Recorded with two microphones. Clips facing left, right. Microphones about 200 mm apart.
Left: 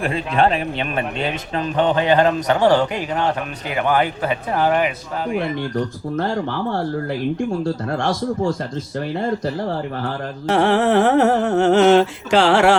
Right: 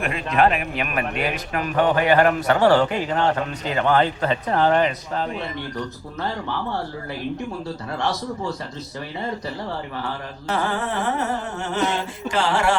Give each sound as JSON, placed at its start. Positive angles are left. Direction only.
{"t": 0.0, "sound": "a man's voice", "side_deg": 30}
{"t": 6.1, "sound": "speech", "side_deg": 50}
{"t": 10.5, "sound": "a sound", "side_deg": 75}